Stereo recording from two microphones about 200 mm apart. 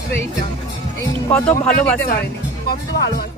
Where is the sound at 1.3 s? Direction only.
5° left (ahead or behind).